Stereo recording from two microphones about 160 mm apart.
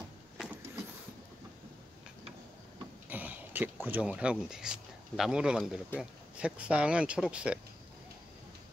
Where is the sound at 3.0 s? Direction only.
10° right (ahead or behind).